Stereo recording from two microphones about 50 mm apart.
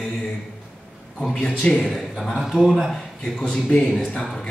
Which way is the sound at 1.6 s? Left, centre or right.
Centre.